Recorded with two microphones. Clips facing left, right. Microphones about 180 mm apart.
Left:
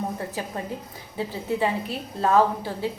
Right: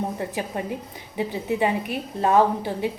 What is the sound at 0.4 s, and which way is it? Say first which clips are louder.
A woman's voice: right 3 dB; 20° right (ahead or behind).